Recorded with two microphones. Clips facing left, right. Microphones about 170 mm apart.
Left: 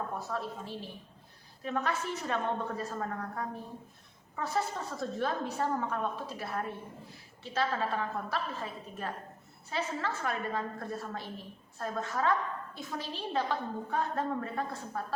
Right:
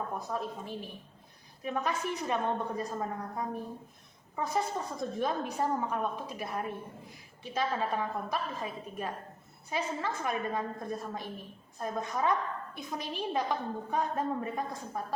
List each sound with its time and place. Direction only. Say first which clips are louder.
0.3 s a woman's voice: right 1 dB; 15° right (ahead or behind)